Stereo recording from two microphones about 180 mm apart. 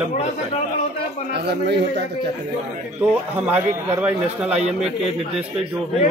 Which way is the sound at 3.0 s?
10° right (ahead or behind).